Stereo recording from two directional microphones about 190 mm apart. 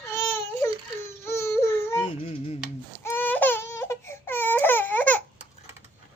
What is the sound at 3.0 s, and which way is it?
Baby cry, 10° left (ahead or behind).